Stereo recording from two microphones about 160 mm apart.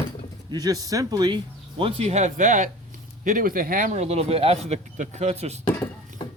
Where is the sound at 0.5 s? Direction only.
25° right (ahead or behind).